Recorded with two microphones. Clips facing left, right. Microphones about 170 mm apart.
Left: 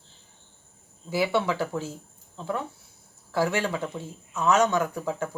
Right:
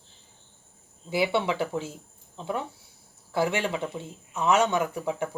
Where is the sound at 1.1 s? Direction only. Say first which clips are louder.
Even; 20° right (ahead or behind).